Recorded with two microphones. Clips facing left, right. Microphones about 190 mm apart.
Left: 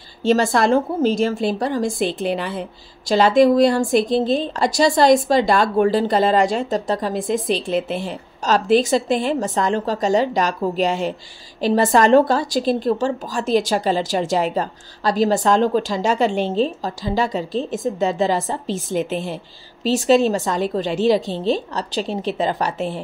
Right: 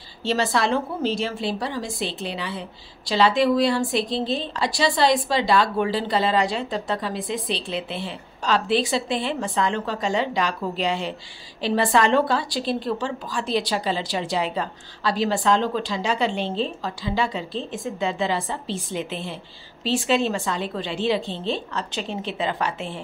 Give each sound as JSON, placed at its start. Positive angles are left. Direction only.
{"t": 0.2, "sound": "a woman's voice", "side_deg": 45}